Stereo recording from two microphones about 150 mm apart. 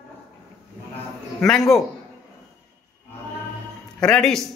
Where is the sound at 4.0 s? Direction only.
5° left (ahead or behind).